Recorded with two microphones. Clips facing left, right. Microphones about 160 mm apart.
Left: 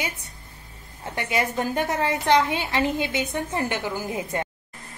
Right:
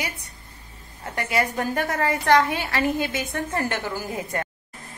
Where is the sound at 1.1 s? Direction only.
20° left (ahead or behind).